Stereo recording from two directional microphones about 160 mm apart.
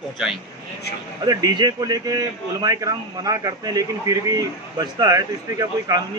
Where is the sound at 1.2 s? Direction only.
25° right (ahead or behind).